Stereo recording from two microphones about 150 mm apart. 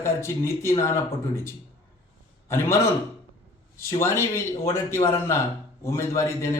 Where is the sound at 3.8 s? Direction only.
20° left (ahead or behind).